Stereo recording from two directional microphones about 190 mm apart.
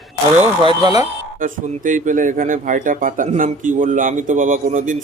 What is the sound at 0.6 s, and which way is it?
Speech, 20° right (ahead or behind).